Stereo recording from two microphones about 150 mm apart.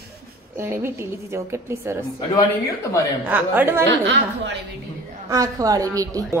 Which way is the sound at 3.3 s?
15° right (ahead or behind).